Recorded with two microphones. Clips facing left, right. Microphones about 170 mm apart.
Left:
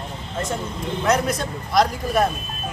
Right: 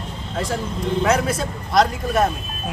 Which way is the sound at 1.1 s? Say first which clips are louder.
Left 3 dB; 5° right (ahead or behind).